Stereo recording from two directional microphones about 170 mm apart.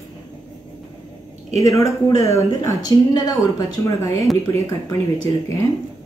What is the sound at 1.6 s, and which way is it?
Speech, 20° left (ahead or behind).